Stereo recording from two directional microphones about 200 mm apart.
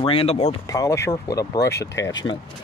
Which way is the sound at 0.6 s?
15° left (ahead or behind).